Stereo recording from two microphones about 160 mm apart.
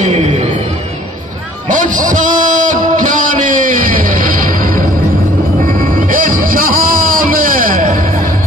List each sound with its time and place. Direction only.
0.0 s music: 40° right (ahead or behind)
1.7 s music: 55° right (ahead or behind)